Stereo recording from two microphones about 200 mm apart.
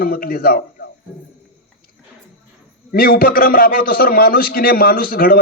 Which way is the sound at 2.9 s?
50° left (ahead or behind).